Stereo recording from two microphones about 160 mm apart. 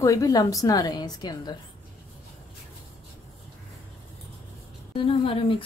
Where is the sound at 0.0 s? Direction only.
20° left (ahead or behind).